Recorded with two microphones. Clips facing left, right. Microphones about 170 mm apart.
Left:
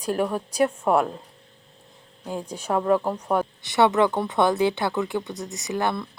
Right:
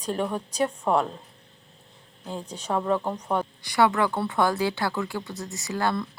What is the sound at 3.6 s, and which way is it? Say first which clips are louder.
Speech: left 3 dB; 25° left (ahead or behind).